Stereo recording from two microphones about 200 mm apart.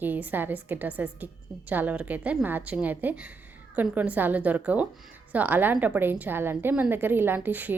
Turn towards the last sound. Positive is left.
turn(degrees=-10)  # may be behind; listen again after turning